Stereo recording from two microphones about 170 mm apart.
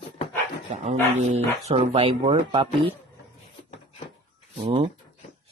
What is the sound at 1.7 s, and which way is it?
Speech, 40° right (ahead or behind).